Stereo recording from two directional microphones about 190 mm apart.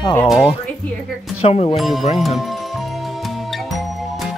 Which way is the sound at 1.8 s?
Centre (ahead or behind).